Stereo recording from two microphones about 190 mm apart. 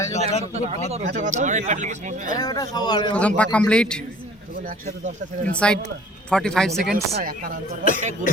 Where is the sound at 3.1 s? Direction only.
5° left (ahead or behind).